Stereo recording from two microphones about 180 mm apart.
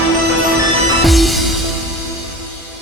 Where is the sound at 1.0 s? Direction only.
Centre (ahead or behind).